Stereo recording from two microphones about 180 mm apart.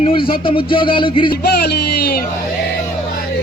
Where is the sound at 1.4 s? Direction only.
65° left (ahead or behind).